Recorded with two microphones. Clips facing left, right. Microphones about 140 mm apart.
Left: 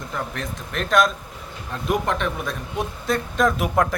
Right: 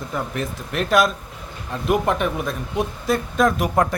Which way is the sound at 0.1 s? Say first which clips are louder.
Right 3 dB; 5° right (ahead or behind).